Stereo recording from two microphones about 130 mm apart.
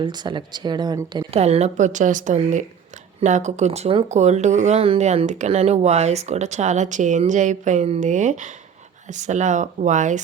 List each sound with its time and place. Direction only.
0.0 s speech: 35° right (ahead or behind)
1.3 s speech: 55° right (ahead or behind); by 10.2 s 70° right (ahead or behind)